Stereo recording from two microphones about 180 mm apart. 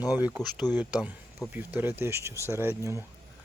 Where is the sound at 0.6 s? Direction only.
20° left (ahead or behind).